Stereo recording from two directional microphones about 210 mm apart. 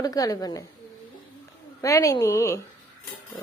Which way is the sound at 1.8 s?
15° left (ahead or behind).